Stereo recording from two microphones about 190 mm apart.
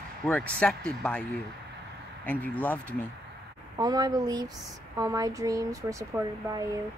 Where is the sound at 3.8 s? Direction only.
20° right (ahead or behind).